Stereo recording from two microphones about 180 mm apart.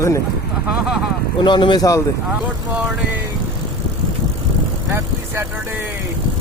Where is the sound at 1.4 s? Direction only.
25° left (ahead or behind).